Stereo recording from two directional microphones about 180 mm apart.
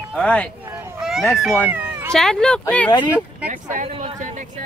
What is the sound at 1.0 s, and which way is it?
Children playing, centre (ahead or behind).